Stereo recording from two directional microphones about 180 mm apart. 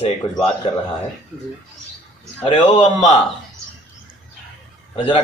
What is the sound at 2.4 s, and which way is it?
Speech, 35° left (ahead or behind).